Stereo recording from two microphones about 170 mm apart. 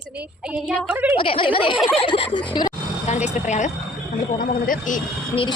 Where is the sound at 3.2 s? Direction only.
40° left (ahead or behind).